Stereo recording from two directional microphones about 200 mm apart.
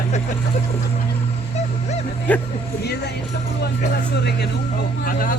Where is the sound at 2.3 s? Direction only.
10° left (ahead or behind).